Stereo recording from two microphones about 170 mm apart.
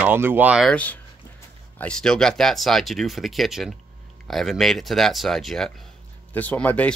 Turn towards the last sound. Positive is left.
turn(degrees=5)  # may be behind; listen again after turning